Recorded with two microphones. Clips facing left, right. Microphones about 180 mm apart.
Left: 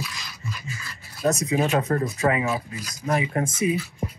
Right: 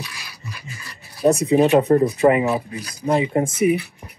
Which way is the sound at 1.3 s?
30° right (ahead or behind).